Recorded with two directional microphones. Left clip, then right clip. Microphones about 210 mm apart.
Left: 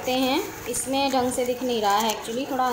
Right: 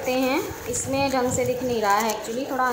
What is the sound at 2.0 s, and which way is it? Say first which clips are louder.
Speech: even; 15° right (ahead or behind).